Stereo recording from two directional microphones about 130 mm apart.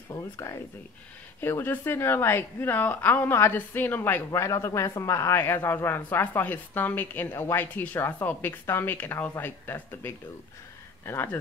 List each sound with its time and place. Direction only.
0.1 s a woman's voice: 25° left (ahead or behind)